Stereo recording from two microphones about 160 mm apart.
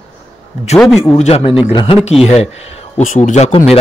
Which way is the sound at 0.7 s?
Centre (ahead or behind).